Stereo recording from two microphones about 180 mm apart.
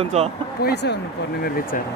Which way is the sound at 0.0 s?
35° right (ahead or behind).